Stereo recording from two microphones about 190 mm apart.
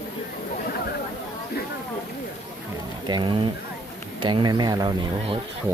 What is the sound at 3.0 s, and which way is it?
Speech, 25° right (ahead or behind).